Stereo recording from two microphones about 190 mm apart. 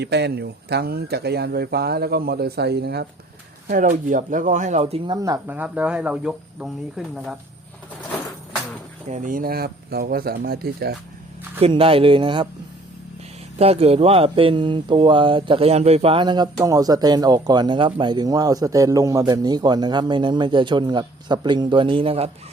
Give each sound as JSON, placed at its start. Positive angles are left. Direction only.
{"t": 0.0, "sound": "speech", "side_deg": -60}
{"t": 3.7, "sound": "speech", "side_deg": -45}
{"t": 5.1, "sound": "speech", "side_deg": -20}
{"t": 5.5, "sound": "speech", "side_deg": -10}
{"t": 9.0, "sound": "speech", "side_deg": -40}
{"t": 11.6, "sound": "speech", "side_deg": -30}
{"t": 13.6, "sound": "speech", "side_deg": -30}